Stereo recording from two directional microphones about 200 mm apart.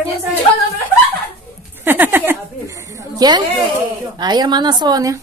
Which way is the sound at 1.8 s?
10° right (ahead or behind).